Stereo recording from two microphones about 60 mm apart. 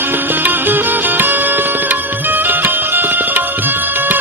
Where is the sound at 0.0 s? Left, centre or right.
Right.